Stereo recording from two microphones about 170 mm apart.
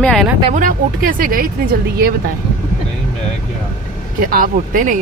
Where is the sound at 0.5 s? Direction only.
55° right (ahead or behind).